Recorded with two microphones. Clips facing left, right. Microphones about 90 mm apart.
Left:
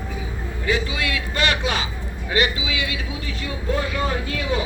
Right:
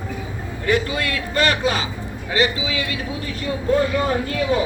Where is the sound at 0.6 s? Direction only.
55° right (ahead or behind).